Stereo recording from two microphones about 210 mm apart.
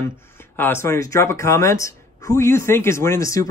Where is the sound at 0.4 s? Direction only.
10° left (ahead or behind).